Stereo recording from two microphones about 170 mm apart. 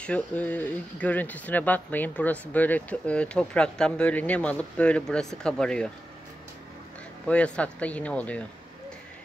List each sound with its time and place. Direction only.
0.0 s speech: 10° left (ahead or behind)
7.2 s speech: 5° left (ahead or behind)